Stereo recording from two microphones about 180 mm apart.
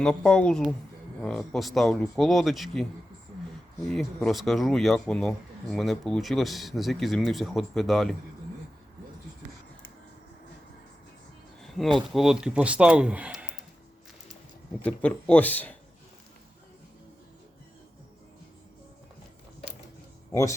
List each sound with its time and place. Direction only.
0.0 s speech: 5° left (ahead or behind)
3.8 s speech: centre (ahead or behind)
11.6 s a sound: centre (ahead or behind)
11.9 s speech: centre (ahead or behind)
14.8 s speech: 5° left (ahead or behind)
20.3 s speech: 15° left (ahead or behind)